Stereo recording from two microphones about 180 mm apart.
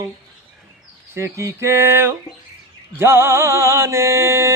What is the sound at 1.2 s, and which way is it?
Music, 15° right (ahead or behind).